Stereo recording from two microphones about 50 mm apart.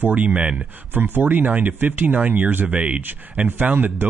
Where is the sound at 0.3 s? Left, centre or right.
Right.